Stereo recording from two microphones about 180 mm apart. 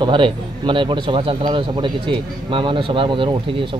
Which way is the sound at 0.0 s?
25° right (ahead or behind).